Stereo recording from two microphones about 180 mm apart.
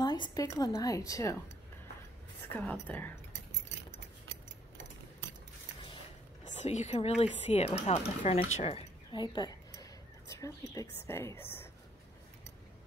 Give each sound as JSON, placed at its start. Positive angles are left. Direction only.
{"t": 0.0, "sound": "a woman's voice", "side_deg": 25}
{"t": 2.5, "sound": "a woman's voice", "side_deg": 10}
{"t": 6.4, "sound": "a woman's voice", "side_deg": 40}